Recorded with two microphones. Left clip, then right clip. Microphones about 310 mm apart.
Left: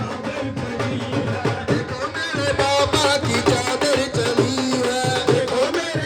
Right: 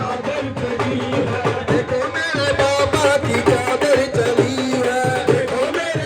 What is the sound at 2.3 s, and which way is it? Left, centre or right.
Music, centre.